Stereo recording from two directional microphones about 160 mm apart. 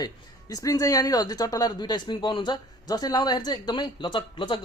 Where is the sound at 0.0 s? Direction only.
25° left (ahead or behind).